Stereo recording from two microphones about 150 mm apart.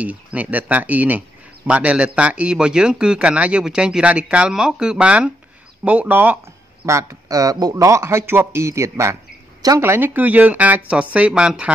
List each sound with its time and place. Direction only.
0.0 s a man's voice: 10° right (ahead or behind)